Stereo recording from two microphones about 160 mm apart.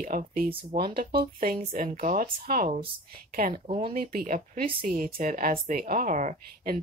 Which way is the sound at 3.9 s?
60° right (ahead or behind).